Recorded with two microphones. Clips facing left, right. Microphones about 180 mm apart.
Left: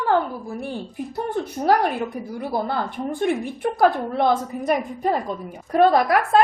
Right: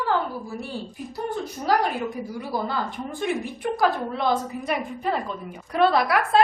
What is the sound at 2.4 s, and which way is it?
A woman's voice, 55° left (ahead or behind).